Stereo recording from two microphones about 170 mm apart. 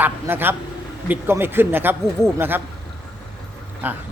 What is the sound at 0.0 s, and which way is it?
Speech, 10° right (ahead or behind).